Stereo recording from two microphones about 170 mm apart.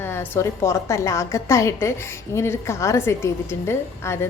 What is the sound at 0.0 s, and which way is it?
A woman's voice, 15° left (ahead or behind).